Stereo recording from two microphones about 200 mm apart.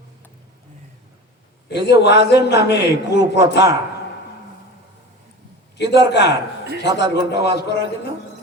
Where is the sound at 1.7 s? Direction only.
60° left (ahead or behind).